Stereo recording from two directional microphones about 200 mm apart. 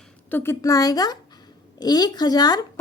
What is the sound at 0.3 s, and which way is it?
A woman's voice, 10° left (ahead or behind).